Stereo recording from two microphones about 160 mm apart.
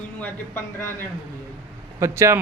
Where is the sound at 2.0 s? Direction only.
15° right (ahead or behind).